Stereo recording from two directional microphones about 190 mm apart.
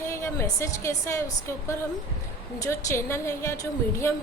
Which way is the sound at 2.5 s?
15° left (ahead or behind).